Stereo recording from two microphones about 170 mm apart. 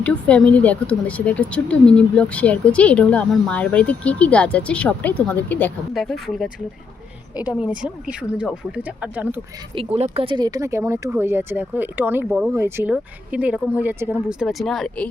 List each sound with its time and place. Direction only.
0.0 s speech: 5° left (ahead or behind)
5.9 s speech: centre (ahead or behind)
9.7 s speech: 35° right (ahead or behind); by 15.1 s 5° left (ahead or behind)